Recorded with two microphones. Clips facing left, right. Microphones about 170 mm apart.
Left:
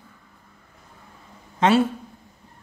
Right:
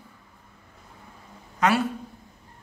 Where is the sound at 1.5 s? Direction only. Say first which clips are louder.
Left 4 dB; 25° left (ahead or behind).